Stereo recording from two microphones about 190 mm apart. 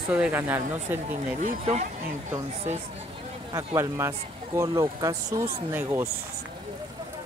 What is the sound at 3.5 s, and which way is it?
Speech, 15° right (ahead or behind).